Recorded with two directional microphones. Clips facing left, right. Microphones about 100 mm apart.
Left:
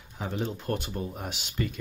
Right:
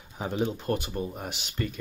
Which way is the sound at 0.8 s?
Centre (ahead or behind).